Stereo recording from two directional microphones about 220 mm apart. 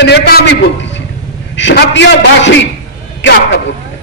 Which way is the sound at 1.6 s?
55° left (ahead or behind).